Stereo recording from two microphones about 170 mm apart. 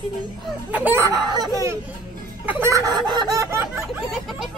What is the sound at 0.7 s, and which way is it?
Chicken, 10° right (ahead or behind).